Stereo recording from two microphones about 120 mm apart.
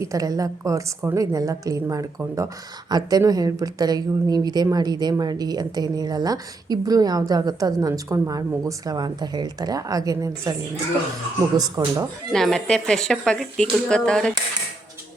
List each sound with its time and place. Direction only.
0.0 s a woman's voice: 30° right (ahead or behind)
11.8 s a woman's voice: 30° right (ahead or behind)
12.3 s speech: 5° left (ahead or behind)